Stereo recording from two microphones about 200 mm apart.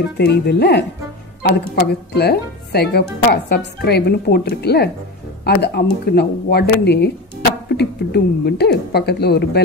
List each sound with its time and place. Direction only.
0.2 s speech: 55° left (ahead or behind)
2.1 s speech: 55° left (ahead or behind)